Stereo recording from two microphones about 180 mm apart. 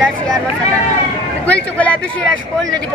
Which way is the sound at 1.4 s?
5° left (ahead or behind).